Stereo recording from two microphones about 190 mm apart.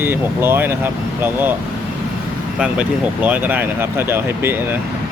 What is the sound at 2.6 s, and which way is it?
Speech, 5° right (ahead or behind).